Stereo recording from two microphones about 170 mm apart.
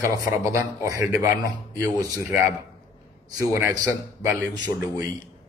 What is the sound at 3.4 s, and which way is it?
A man's voice, 15° right (ahead or behind).